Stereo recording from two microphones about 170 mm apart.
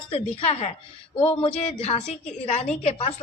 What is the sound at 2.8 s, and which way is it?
Speech, 35° left (ahead or behind).